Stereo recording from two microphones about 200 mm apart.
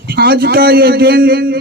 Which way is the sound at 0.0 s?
50° right (ahead or behind).